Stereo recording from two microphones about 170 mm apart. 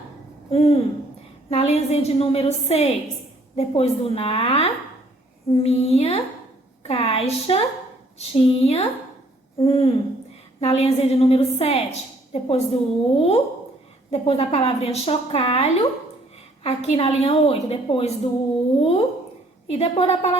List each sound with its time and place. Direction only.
0.5 s a woman's voice: 35° left (ahead or behind)